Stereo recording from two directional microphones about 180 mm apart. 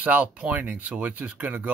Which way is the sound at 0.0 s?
10° right (ahead or behind).